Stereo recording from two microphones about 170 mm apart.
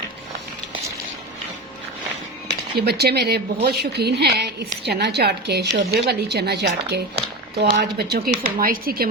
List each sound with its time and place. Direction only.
2.5 s speech: 70° right (ahead or behind)